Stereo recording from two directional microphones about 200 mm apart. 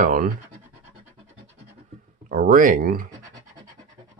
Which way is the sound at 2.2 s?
45° right (ahead or behind).